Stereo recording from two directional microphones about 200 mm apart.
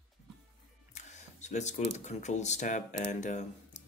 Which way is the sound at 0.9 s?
35° left (ahead or behind).